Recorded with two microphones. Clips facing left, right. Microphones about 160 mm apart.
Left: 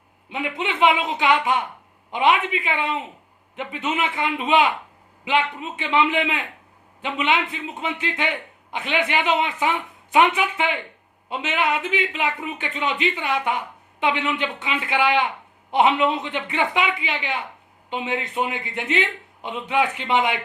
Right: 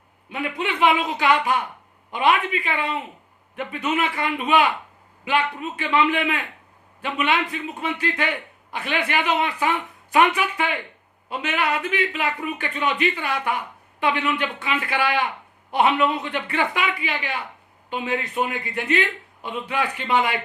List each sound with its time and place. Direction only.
0.3 s a man's voice: 20° left (ahead or behind)